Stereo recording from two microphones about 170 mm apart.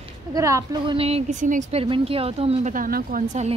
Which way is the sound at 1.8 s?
35° right (ahead or behind).